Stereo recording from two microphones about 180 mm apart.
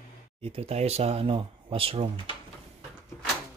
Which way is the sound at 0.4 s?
35° right (ahead or behind).